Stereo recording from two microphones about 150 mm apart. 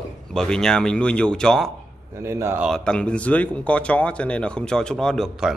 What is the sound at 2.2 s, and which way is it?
Speech, 15° right (ahead or behind).